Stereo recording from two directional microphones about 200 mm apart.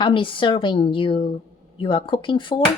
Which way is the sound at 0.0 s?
25° left (ahead or behind).